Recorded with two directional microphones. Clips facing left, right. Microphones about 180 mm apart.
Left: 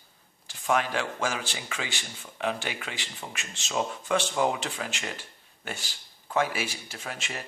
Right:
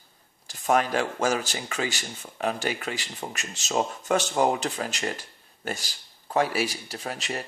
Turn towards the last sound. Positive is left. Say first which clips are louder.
# right 5 dB
turn(degrees=-35)  # may be behind; listen again after turning